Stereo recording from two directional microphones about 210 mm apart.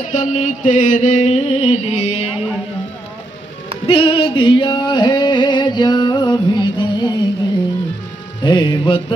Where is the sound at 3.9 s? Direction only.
25° left (ahead or behind).